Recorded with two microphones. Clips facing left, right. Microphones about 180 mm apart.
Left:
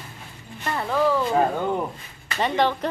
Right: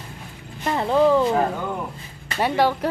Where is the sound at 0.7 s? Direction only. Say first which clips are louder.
Right 4 dB; 25° right (ahead or behind).